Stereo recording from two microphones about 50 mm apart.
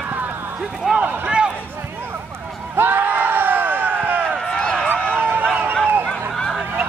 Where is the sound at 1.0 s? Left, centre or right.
Right.